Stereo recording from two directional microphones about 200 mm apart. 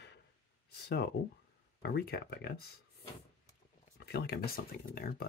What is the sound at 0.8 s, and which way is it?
Speech, 55° left (ahead or behind).